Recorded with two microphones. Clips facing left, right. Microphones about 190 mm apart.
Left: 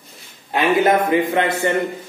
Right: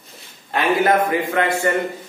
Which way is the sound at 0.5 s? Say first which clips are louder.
Left 1 dB; 20° left (ahead or behind).